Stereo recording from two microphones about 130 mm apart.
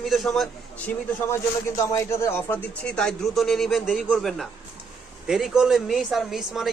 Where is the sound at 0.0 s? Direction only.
Centre (ahead or behind).